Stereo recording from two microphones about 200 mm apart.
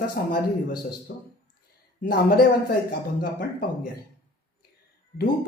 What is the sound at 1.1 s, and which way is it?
Speech, 55° left (ahead or behind).